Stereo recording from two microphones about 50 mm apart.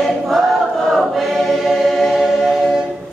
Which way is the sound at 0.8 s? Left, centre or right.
Centre.